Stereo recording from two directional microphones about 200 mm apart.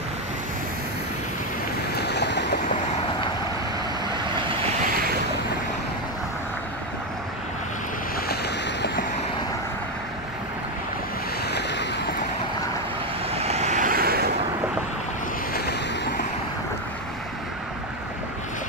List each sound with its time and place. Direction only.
2.0 s waves: 55° left (ahead or behind)
11.5 s vehicle: 60° left (ahead or behind)
13.3 s vehicle: 30° right (ahead or behind); by 14.2 s 50° right (ahead or behind)